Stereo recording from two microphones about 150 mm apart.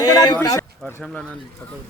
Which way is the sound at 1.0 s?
5° left (ahead or behind).